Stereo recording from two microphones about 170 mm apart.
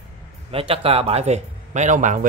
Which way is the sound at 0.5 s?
35° right (ahead or behind).